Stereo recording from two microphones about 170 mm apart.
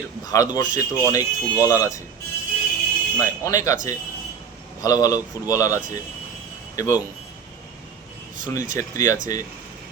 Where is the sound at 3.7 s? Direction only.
50° right (ahead or behind).